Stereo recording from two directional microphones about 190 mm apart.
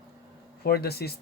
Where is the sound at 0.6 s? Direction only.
55° left (ahead or behind).